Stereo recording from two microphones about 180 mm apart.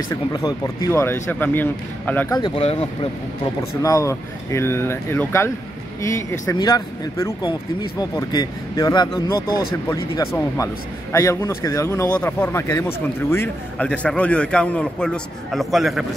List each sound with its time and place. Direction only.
0.1 s a man's voice: 20° left (ahead or behind)
2.3 s speech: 30° left (ahead or behind)
3.8 s a man's voice: 15° left (ahead or behind); by 16.1 s centre (ahead or behind)